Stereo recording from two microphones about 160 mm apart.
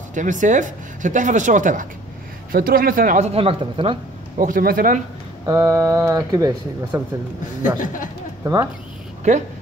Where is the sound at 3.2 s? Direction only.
40° right (ahead or behind).